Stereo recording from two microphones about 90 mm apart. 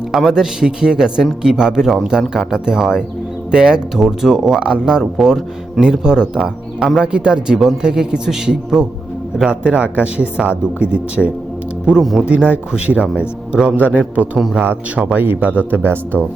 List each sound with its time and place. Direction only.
0.1 s speech: 5° right (ahead or behind)
11.9 s speech: centre (ahead or behind)
12.3 s speech: 15° right (ahead or behind)